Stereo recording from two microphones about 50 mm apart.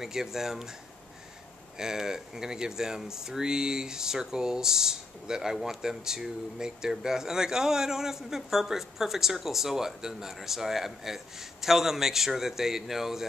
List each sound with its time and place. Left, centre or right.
0.0 s speech: centre
1.8 s speech: centre